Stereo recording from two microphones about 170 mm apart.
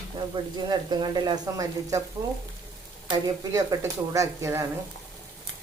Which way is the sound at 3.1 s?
25° right (ahead or behind).